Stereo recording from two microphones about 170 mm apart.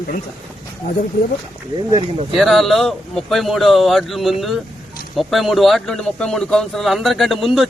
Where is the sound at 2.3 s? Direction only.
Centre (ahead or behind).